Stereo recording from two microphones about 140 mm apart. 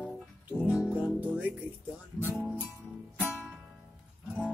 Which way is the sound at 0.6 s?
5° right (ahead or behind).